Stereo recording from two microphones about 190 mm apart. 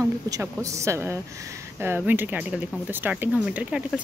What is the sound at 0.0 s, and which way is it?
A woman's voice, 15° right (ahead or behind).